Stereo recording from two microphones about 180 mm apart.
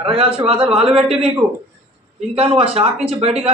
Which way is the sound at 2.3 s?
30° right (ahead or behind).